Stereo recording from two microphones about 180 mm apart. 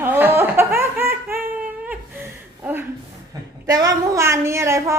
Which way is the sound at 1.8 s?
10° right (ahead or behind).